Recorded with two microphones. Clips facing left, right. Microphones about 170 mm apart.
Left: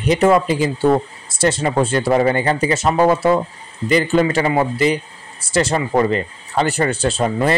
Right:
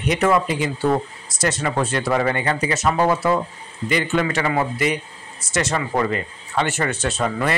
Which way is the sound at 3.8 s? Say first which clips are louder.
Left 6 dB; 35° left (ahead or behind).